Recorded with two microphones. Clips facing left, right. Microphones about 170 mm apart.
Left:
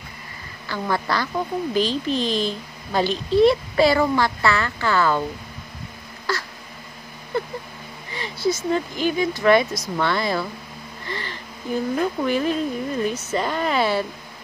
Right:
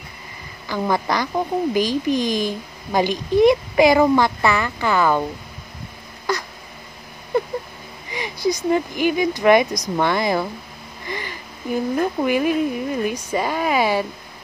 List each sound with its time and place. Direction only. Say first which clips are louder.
0.7 s a woman's voice: right 3 dB; 15° right (ahead or behind)
6.3 s a sound: right 3 dB; 20° right (ahead or behind)
8.1 s a woman's voice: right 1 dB; 15° right (ahead or behind)